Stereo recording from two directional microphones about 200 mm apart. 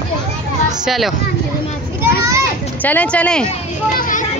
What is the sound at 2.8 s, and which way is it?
Speech, 10° left (ahead or behind).